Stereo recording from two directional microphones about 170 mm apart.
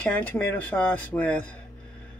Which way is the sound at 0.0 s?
10° left (ahead or behind).